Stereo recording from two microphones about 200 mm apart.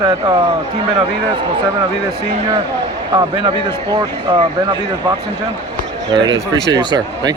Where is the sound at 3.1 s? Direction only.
20° right (ahead or behind).